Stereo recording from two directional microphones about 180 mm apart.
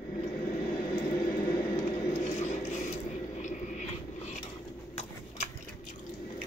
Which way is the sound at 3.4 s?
45° left (ahead or behind).